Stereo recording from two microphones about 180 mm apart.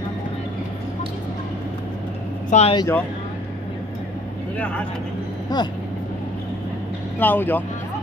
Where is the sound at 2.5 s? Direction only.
40° left (ahead or behind).